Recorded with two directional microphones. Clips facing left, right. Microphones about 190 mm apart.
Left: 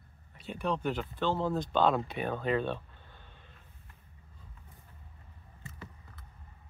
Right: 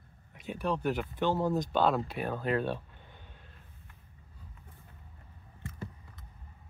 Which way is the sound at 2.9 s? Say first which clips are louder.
Right 2 dB; 15° right (ahead or behind).